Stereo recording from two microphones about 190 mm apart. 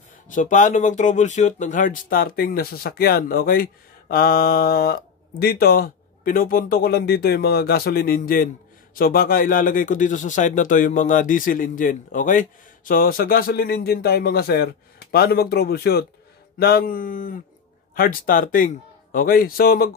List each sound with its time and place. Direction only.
0.3 s speech: 40° left (ahead or behind)